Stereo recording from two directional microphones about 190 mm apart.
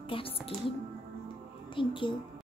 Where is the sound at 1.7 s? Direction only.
25° left (ahead or behind).